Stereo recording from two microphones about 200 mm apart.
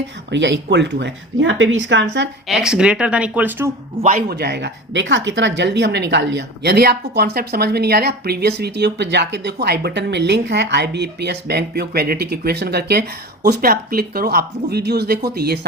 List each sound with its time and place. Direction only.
0.3 s speech: 65° right (ahead or behind)
2.5 s speech: 5° right (ahead or behind)
4.0 s speech: 45° right (ahead or behind)